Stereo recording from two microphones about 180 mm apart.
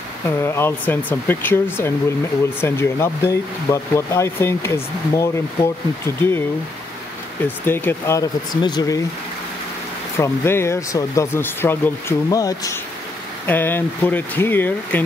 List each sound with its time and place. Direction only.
0.4 s speech: 15° left (ahead or behind)
7.4 s speech: 10° left (ahead or behind)
10.1 s speech: 15° left (ahead or behind)